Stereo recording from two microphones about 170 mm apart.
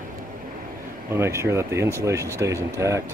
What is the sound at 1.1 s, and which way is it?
Speech, 15° right (ahead or behind).